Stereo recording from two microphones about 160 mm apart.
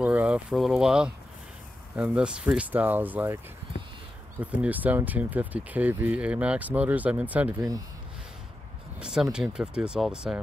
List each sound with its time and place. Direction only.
0.0 s speech: 10° right (ahead or behind)
4.4 s speech: 10° right (ahead or behind)
9.0 s speech: 5° right (ahead or behind)